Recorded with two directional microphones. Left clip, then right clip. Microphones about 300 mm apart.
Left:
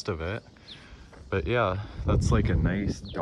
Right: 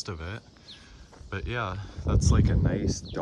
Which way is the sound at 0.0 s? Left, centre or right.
Centre.